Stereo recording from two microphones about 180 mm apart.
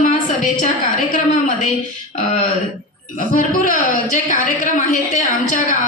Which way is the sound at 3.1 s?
45° left (ahead or behind).